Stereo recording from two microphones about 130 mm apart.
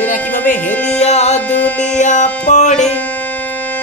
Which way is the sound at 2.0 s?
70° left (ahead or behind).